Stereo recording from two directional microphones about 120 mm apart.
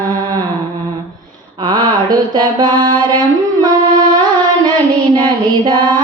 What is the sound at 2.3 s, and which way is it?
Mantra, 35° right (ahead or behind).